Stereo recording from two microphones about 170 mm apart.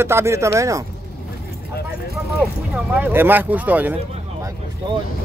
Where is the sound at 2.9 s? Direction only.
10° right (ahead or behind).